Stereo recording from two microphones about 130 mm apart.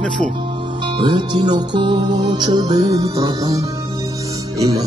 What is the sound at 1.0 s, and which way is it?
Music, 35° right (ahead or behind).